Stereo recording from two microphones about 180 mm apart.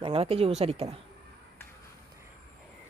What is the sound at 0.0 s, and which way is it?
Speech, 35° right (ahead or behind).